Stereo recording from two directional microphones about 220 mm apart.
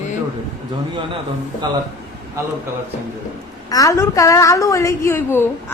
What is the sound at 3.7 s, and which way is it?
A woman's voice, 15° left (ahead or behind).